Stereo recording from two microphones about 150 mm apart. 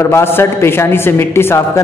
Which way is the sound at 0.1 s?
15° left (ahead or behind).